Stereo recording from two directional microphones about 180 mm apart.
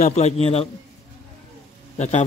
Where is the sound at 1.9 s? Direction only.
40° left (ahead or behind).